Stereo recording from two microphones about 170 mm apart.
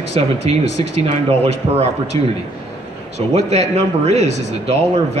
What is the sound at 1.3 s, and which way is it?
Speech, 35° right (ahead or behind).